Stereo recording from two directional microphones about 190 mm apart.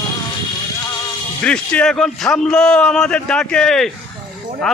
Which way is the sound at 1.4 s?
5° left (ahead or behind).